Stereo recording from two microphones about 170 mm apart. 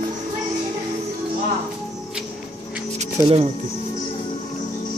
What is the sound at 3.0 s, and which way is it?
Music, 35° right (ahead or behind).